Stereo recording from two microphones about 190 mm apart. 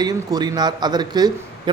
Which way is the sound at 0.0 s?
20° right (ahead or behind).